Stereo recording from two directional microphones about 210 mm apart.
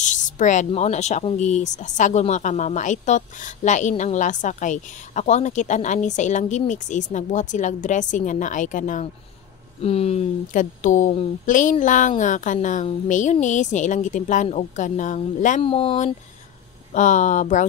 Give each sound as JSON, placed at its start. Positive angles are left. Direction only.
{"t": 0.0, "sound": "speech", "side_deg": 35}
{"t": 16.9, "sound": "speech", "side_deg": 35}